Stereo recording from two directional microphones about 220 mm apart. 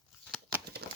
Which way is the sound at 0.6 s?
45° right (ahead or behind).